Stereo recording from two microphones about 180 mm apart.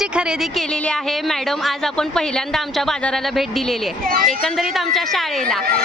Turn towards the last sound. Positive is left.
turn(degrees=0)  # may be behind; listen again after turning